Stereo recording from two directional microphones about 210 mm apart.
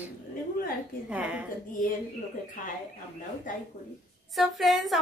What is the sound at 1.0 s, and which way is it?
Speech, 5° right (ahead or behind).